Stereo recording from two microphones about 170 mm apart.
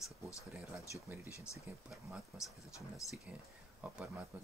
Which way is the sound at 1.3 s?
15° left (ahead or behind).